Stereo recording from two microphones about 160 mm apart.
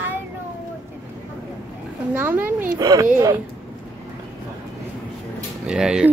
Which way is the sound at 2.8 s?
25° right (ahead or behind).